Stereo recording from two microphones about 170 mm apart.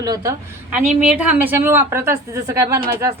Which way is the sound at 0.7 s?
5° right (ahead or behind).